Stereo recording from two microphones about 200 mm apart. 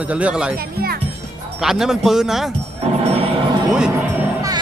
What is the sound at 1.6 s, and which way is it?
Speech, centre (ahead or behind).